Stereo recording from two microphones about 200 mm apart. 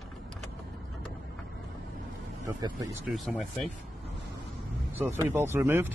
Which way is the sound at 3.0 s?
Centre (ahead or behind).